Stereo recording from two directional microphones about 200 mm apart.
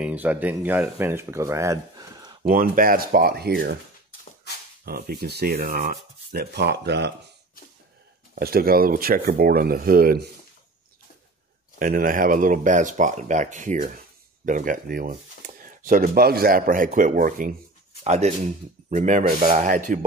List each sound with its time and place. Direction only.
0.0 s speech: 5° right (ahead or behind)
2.4 s speech: 45° right (ahead or behind)
4.8 s speech: 50° right (ahead or behind)
8.4 s speech: 50° right (ahead or behind)
11.8 s speech: 45° right (ahead or behind)